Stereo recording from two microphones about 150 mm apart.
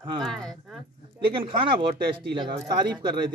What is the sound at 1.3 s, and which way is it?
Speech, 35° right (ahead or behind).